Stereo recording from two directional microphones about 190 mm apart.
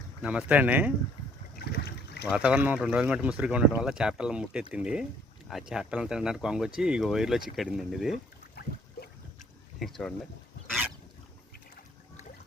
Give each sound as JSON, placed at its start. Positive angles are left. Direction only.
{"t": 0.2, "sound": "speech", "side_deg": -5}
{"t": 1.5, "sound": "boat", "side_deg": 55}
{"t": 2.2, "sound": "speech", "side_deg": -5}
{"t": 9.8, "sound": "speech", "side_deg": 5}